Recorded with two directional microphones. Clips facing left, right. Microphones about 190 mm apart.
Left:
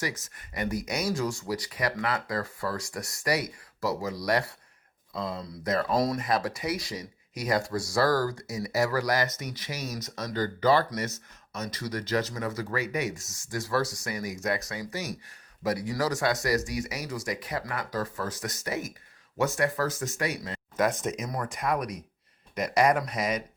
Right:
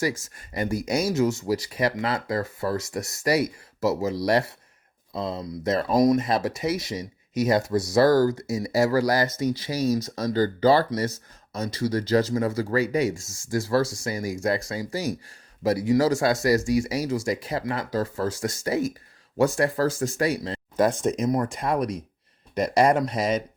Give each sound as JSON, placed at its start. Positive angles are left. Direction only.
{"t": 0.0, "sound": "speech", "side_deg": -30}